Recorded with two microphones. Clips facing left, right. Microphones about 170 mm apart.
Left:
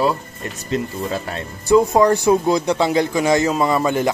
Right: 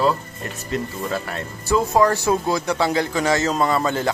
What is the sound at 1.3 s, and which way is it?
Speech, 20° left (ahead or behind).